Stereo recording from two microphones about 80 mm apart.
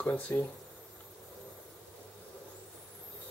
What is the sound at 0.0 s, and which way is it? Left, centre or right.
Speech, centre.